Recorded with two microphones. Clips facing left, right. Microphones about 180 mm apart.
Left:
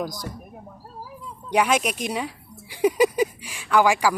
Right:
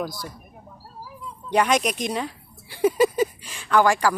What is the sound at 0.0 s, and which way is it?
Speech, 15° left (ahead or behind).